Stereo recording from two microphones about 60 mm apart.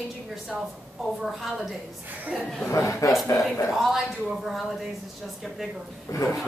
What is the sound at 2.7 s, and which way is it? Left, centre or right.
Speech, left.